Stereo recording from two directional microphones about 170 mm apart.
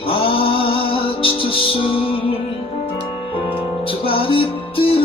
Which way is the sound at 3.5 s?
30° left (ahead or behind).